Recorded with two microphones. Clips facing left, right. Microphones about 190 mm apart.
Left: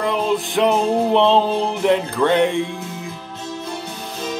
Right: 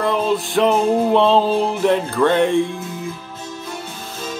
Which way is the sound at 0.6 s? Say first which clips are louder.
Right 2 dB; 20° left (ahead or behind).